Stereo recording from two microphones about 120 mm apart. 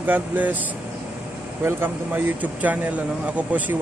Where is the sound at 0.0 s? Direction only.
15° right (ahead or behind).